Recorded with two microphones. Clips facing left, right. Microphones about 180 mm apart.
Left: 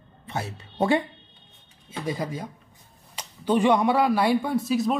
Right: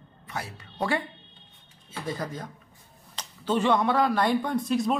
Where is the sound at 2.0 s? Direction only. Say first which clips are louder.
Left 3 dB; 10° left (ahead or behind).